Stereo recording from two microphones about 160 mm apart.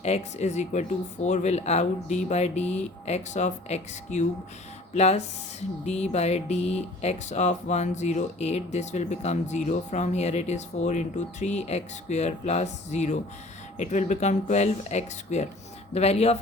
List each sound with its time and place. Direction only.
0.0 s speech: 45° left (ahead or behind)